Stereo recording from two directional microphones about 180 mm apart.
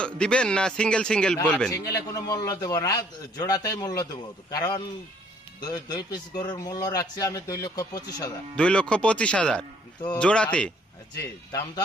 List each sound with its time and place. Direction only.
0.0 s a man's voice: 5° left (ahead or behind)
1.7 s a man's voice: 20° left (ahead or behind)
8.5 s a man's voice: 5° left (ahead or behind)